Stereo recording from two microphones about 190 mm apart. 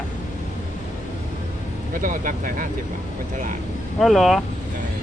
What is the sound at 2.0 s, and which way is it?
Speech, 45° right (ahead or behind).